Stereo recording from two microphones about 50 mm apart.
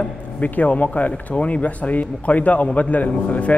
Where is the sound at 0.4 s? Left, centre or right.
Left.